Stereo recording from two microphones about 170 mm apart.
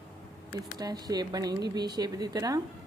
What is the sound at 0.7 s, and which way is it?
A woman's voice, 25° right (ahead or behind).